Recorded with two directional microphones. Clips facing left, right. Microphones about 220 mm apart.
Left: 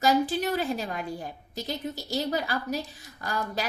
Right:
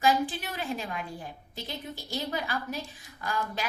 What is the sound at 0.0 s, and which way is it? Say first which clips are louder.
A woman's voice: left 3 dB; 40° left (ahead or behind).